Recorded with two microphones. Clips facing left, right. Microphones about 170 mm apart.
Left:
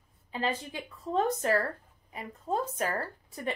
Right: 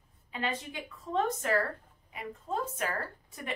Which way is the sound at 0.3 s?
30° left (ahead or behind).